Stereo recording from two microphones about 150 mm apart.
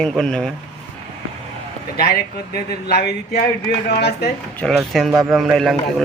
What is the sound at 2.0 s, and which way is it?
Speech, 90° left.